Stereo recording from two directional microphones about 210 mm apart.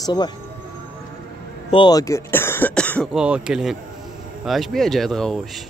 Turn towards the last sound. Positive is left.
turn(degrees=0)  # may be behind; listen again after turning